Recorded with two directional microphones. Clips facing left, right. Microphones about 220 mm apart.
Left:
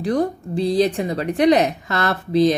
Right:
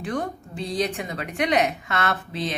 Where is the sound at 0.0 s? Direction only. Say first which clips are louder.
Left 8 dB; 35° left (ahead or behind).